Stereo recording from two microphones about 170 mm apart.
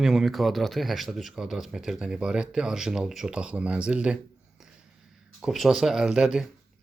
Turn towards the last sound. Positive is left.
turn(degrees=-5)  # may be behind; listen again after turning